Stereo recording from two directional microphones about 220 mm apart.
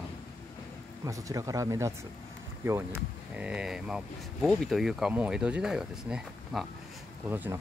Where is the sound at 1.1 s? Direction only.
15° right (ahead or behind).